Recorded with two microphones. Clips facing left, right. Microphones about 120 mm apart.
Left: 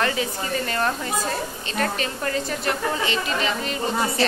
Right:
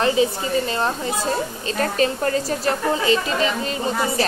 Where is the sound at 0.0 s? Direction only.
25° right (ahead or behind).